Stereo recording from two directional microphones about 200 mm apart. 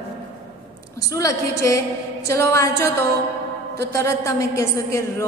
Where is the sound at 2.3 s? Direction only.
15° left (ahead or behind).